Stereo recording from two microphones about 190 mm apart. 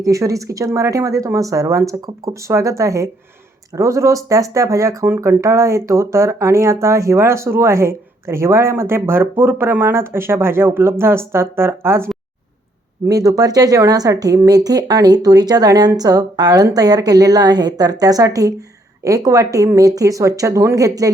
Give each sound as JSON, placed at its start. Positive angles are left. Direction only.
{"t": 0.0, "sound": "speech", "side_deg": -15}
{"t": 13.1, "sound": "speech", "side_deg": -20}